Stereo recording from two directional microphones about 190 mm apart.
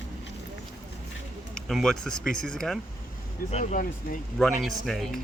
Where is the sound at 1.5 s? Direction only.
Centre (ahead or behind).